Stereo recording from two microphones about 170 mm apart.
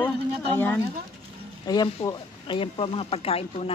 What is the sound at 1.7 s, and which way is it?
A woman's voice, 25° left (ahead or behind).